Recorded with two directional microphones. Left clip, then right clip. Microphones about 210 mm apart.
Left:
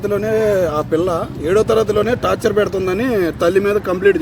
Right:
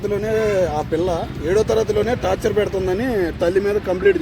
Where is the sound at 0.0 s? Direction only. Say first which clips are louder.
Left 3 dB; 50° left (ahead or behind).